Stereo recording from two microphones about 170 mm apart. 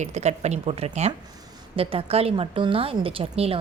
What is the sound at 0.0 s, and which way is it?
Speech, 40° right (ahead or behind).